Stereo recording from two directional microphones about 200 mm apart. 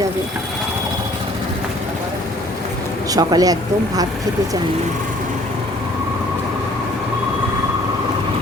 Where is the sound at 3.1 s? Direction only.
20° right (ahead or behind).